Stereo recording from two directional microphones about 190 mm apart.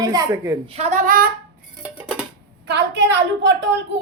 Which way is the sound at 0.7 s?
35° right (ahead or behind).